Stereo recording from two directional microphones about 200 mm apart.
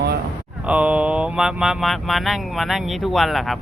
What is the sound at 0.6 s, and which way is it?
Speech, 5° right (ahead or behind).